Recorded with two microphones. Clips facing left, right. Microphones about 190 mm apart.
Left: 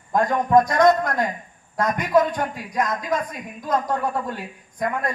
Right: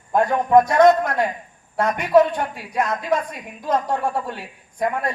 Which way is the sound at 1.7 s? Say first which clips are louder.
Right 3 dB; 30° right (ahead or behind).